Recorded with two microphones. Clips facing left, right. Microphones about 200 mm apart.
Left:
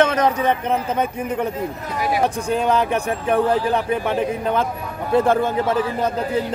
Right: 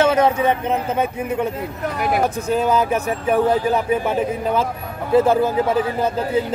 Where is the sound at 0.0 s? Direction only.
10° right (ahead or behind).